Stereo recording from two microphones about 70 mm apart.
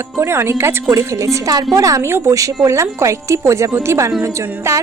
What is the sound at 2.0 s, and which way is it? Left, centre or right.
A woman's voice, right.